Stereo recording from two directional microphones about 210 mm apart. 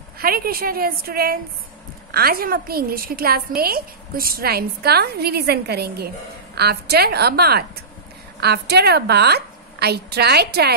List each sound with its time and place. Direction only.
0.2 s a woman's voice: 45° right (ahead or behind)